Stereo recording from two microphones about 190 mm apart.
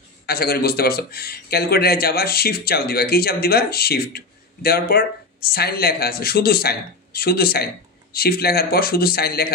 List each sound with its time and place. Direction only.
0.3 s speech: 55° left (ahead or behind)